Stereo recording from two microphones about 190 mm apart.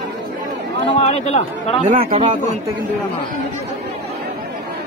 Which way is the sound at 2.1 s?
40° right (ahead or behind).